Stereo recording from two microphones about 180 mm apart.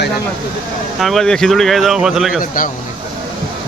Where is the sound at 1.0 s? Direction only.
Centre (ahead or behind).